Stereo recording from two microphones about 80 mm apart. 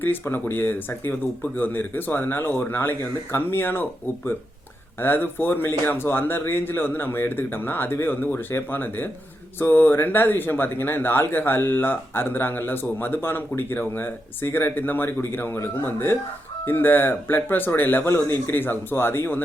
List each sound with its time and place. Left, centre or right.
0.0 s speech: left
4.9 s speech: left